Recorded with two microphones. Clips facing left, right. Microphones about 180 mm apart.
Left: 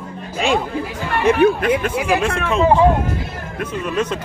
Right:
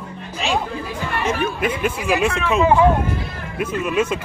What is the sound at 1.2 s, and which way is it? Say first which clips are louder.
Speech: left 9 dB; 65° left (ahead or behind).